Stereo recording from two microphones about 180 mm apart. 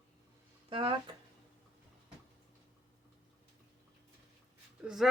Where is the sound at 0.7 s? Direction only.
30° right (ahead or behind).